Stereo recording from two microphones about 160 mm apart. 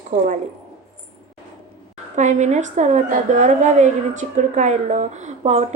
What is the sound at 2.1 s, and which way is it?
A woman's voice, 50° right (ahead or behind).